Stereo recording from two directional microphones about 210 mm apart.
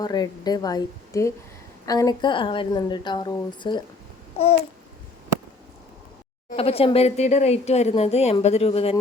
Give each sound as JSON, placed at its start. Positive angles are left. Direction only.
{"t": 0.0, "sound": "a woman's voice", "side_deg": 20}
{"t": 6.6, "sound": "a woman's voice", "side_deg": 25}